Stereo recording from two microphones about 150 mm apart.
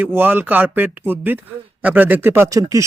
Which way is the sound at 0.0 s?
15° right (ahead or behind).